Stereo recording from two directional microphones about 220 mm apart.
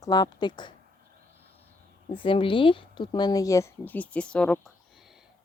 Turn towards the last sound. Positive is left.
turn(degrees=0)  # may be behind; listen again after turning